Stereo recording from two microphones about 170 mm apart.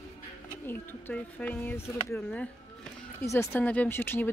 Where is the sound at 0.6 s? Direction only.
10° left (ahead or behind).